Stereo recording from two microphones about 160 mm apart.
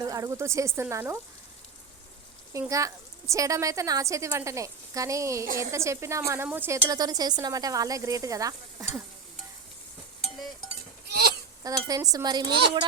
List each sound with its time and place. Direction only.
0.0 s a woman's voice: 20° right (ahead or behind)
2.5 s a woman's voice: 20° right (ahead or behind)
11.1 s a sound: 85° right
11.6 s a woman's voice: 20° right (ahead or behind)